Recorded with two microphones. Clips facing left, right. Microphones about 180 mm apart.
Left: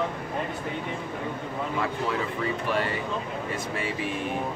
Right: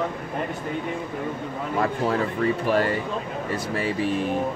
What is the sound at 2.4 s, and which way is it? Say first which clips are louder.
Speech: right 7 dB; 40° right (ahead or behind).